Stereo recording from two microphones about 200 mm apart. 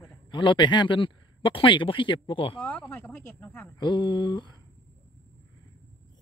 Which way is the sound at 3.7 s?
20° left (ahead or behind).